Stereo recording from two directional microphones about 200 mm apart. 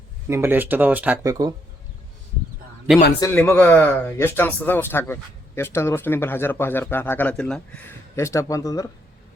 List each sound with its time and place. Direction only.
0.3 s speech: 10° right (ahead or behind)
3.2 s speech: 10° left (ahead or behind)